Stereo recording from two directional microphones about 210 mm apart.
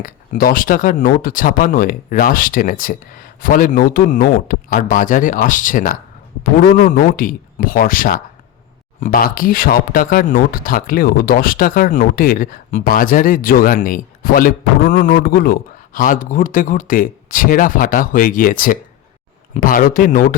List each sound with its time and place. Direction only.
0.0 s speech: 40° left (ahead or behind)